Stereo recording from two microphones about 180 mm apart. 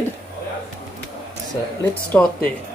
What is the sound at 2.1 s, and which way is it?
Speech, 5° left (ahead or behind).